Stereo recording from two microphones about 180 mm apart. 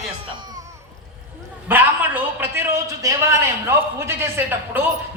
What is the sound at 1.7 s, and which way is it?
A man's voice, 10° right (ahead or behind).